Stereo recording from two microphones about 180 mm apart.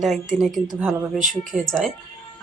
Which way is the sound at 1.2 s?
45° right (ahead or behind).